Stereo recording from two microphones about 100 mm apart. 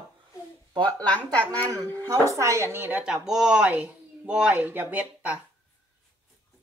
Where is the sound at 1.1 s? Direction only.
15° left (ahead or behind).